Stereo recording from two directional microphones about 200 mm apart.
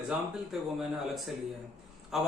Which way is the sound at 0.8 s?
Centre (ahead or behind).